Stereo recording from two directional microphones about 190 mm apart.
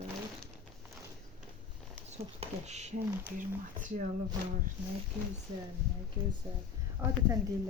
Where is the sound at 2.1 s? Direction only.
35° right (ahead or behind).